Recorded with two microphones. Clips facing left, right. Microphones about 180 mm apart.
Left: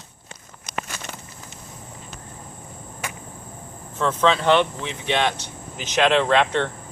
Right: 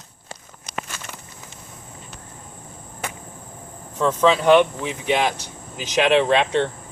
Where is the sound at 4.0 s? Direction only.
10° right (ahead or behind).